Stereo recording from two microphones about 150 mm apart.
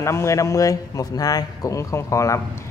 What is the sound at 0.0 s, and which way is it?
A man's voice, 20° left (ahead or behind).